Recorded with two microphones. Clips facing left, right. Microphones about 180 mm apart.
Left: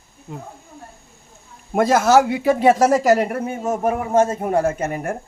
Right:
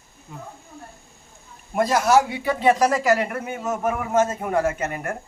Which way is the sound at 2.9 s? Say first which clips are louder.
Left 5 dB; 40° left (ahead or behind).